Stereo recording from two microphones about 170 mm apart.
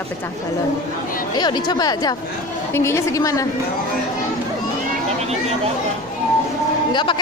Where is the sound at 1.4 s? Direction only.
25° left (ahead or behind).